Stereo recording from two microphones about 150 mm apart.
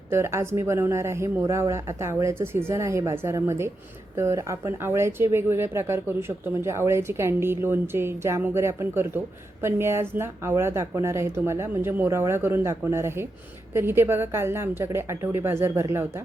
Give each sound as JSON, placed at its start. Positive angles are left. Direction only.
{"t": 0.1, "sound": "speech", "side_deg": -20}